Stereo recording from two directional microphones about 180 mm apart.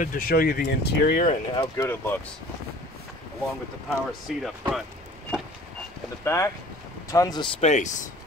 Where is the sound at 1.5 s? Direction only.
20° left (ahead or behind).